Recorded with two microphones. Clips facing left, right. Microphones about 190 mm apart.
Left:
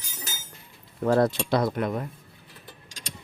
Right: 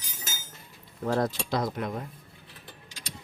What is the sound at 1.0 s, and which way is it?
Speech, 80° left.